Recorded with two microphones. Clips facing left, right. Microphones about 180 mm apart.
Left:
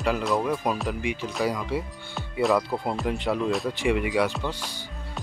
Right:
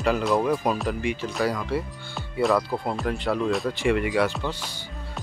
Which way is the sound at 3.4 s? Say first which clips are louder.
Right 1 dB; centre (ahead or behind).